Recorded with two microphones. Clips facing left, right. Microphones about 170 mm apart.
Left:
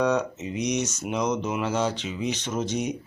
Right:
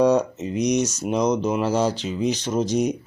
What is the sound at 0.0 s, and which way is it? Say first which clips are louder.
Speech: right 6 dB; 40° right (ahead or behind).